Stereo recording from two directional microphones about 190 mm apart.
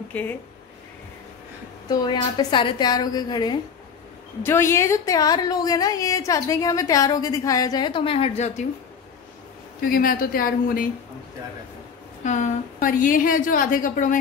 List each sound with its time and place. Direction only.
0.1 s speech: 10° left (ahead or behind)
1.9 s a woman's voice: 25° left (ahead or behind)
9.8 s a woman's voice: 50° left (ahead or behind)
12.2 s a woman's voice: 40° left (ahead or behind)